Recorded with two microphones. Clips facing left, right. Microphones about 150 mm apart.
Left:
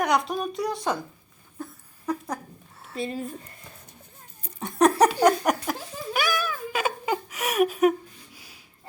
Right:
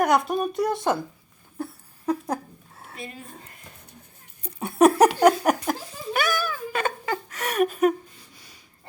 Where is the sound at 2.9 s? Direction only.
30° left (ahead or behind).